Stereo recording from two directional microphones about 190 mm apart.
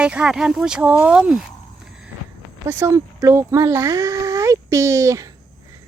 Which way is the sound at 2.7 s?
15° right (ahead or behind).